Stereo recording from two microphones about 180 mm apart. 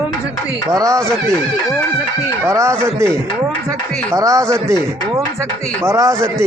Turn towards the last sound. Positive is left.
turn(degrees=-15)  # may be behind; listen again after turning